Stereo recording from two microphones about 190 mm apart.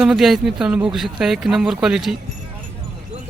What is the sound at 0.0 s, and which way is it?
Speech, centre (ahead or behind).